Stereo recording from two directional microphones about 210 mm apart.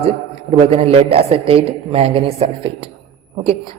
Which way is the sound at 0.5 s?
25° right (ahead or behind).